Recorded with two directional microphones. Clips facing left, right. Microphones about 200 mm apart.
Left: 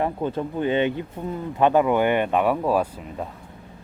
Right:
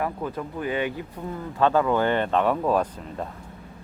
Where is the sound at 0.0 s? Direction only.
30° left (ahead or behind); by 3.2 s 10° left (ahead or behind).